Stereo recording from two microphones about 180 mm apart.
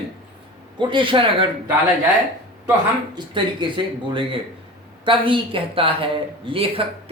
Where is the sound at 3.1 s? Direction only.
25° right (ahead or behind).